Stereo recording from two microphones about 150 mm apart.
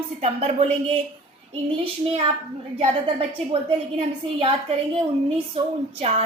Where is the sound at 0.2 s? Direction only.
45° right (ahead or behind).